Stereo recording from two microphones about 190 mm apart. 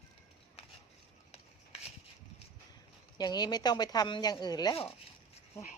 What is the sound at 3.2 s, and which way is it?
Speech, 20° left (ahead or behind).